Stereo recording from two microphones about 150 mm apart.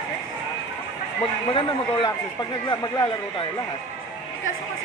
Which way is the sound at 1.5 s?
30° left (ahead or behind).